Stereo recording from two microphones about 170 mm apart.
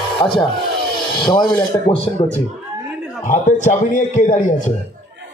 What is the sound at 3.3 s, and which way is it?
Speech, 45° left (ahead or behind).